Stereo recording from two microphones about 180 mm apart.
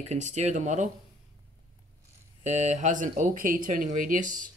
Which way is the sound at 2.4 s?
40° right (ahead or behind).